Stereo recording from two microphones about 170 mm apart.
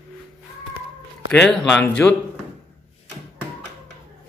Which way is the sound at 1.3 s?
5° left (ahead or behind).